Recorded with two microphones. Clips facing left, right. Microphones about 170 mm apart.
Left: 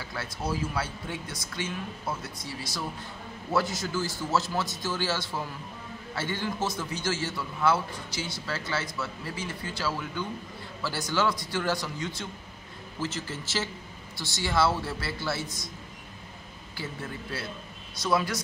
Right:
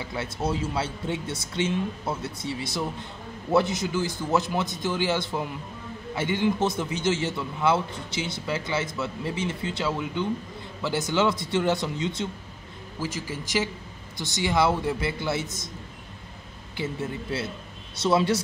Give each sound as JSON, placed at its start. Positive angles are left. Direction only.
{"t": 0.0, "sound": "speech", "side_deg": -20}
{"t": 16.7, "sound": "speech", "side_deg": -20}